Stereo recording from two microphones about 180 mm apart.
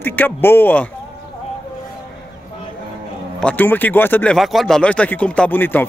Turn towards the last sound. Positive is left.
turn(degrees=10)  # may be behind; listen again after turning